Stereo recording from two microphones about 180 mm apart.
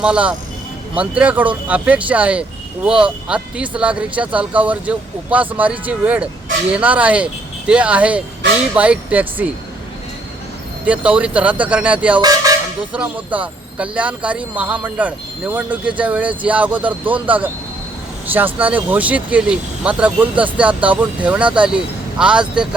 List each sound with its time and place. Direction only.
0.0 s speech: 5° right (ahead or behind)
10.8 s speech: 5° right (ahead or behind)
12.2 s a sound: 20° right (ahead or behind)
12.9 s speech: 10° right (ahead or behind)